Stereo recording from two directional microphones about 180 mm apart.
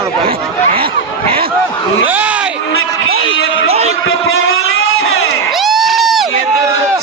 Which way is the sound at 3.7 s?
35° right (ahead or behind).